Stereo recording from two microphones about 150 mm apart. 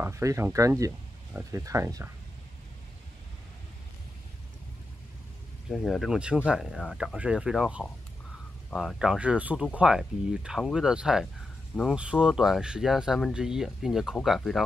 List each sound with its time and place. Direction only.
0.0 s speech: 20° right (ahead or behind)
5.7 s speech: centre (ahead or behind)